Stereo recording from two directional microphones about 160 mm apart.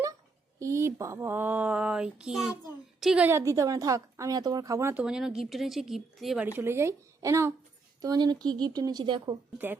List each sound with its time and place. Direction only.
0.6 s a sound: 20° right (ahead or behind)
3.0 s a woman's voice: 5° right (ahead or behind)
3.2 s speech: 15° right (ahead or behind)
5.0 s a woman's voice: 5° right (ahead or behind)
6.6 s a sound: 15° right (ahead or behind)
8.0 s speech: 25° right (ahead or behind)